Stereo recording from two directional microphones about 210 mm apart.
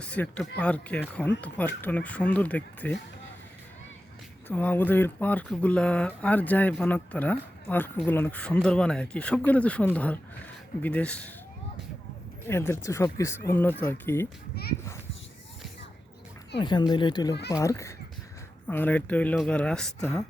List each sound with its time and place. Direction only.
0.0 s speech: 5° left (ahead or behind)
4.4 s speech: 10° left (ahead or behind)
12.5 s speech: 10° left (ahead or behind)
14.5 s a child's voice: 50° left (ahead or behind)
16.6 s speech: 20° left (ahead or behind); by 20.2 s 5° left (ahead or behind)